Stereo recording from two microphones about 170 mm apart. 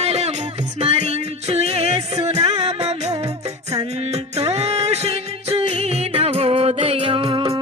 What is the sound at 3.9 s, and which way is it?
Music, 40° right (ahead or behind).